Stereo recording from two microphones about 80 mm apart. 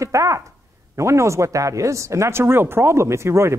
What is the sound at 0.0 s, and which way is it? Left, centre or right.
Speech, right.